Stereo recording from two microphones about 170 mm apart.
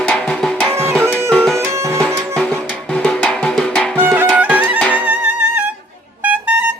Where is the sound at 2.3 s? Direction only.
5° left (ahead or behind).